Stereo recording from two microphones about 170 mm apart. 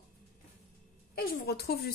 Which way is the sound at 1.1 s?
65° left (ahead or behind).